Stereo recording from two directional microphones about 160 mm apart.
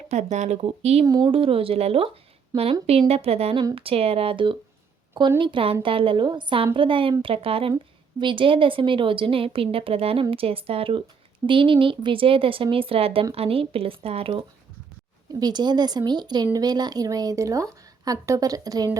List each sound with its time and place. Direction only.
0.1 s speech: 45° right (ahead or behind)
1.0 s speech: 25° right (ahead or behind)
1.3 s a woman's voice: 35° right (ahead or behind)
2.5 s speech: 20° right (ahead or behind)
3.1 s a woman's voice: 40° right (ahead or behind)
15.3 s speech: 25° right (ahead or behind)